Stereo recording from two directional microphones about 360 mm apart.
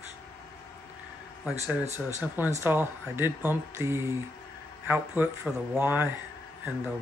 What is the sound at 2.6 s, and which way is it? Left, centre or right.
Speech, centre.